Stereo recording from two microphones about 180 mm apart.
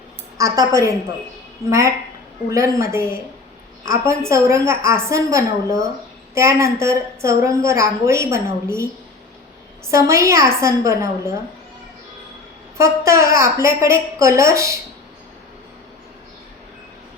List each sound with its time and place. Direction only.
0.3 s a woman's voice: 15° right (ahead or behind)
9.9 s a woman's voice: 15° right (ahead or behind)
12.7 s a woman's voice: 15° right (ahead or behind)